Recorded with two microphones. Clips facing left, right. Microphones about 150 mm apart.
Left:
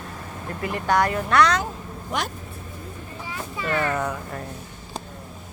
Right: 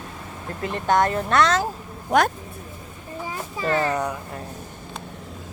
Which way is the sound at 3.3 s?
35° right (ahead or behind).